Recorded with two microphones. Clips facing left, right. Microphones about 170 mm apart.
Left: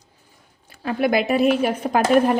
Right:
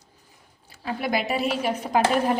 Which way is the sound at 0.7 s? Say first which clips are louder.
Left 6 dB; 60° left (ahead or behind).